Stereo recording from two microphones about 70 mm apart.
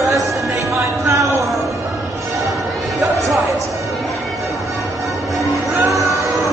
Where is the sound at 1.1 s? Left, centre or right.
Right.